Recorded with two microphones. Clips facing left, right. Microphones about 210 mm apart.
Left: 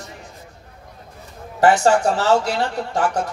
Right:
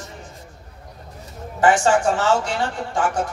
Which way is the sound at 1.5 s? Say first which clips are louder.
Left 2 dB; 40° left (ahead or behind).